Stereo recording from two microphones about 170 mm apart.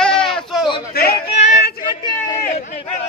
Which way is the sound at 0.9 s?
65° left (ahead or behind).